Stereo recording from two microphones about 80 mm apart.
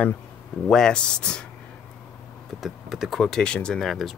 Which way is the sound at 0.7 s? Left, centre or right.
Centre.